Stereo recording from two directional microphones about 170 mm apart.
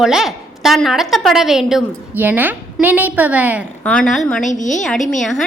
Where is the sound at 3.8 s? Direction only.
5° left (ahead or behind).